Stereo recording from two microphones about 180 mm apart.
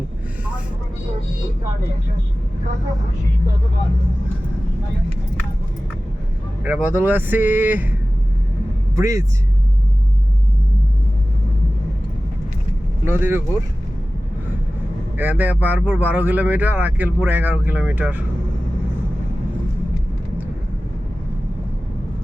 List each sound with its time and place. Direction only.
6.6 s speech: 5° right (ahead or behind)
9.0 s speech: 20° right (ahead or behind)
13.1 s speech: 10° right (ahead or behind)
15.2 s speech: 10° right (ahead or behind)